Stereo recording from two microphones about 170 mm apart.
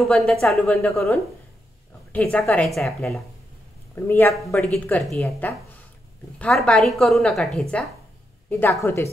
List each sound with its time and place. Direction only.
0.0 s a woman's voice: centre (ahead or behind)
3.9 s a man's voice: 15° left (ahead or behind)